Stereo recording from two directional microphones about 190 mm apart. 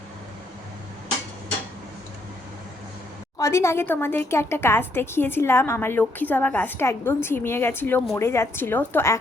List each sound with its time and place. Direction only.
3.3 s a woman's voice: 15° left (ahead or behind)